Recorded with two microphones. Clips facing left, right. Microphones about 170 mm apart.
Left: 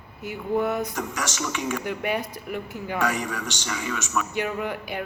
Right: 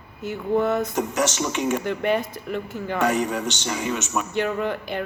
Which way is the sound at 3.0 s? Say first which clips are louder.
Right 7 dB; 30° right (ahead or behind).